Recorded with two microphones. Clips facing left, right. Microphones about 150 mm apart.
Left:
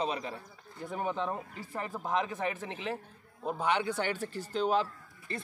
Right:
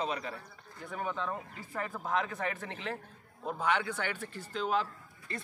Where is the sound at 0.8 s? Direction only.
30° left (ahead or behind).